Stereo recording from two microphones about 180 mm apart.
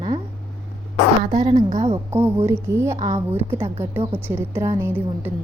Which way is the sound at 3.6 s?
40° right (ahead or behind).